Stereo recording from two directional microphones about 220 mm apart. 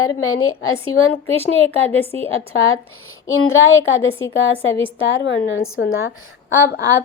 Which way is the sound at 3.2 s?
65° left (ahead or behind).